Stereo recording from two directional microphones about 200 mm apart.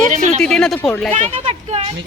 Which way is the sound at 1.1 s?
35° right (ahead or behind).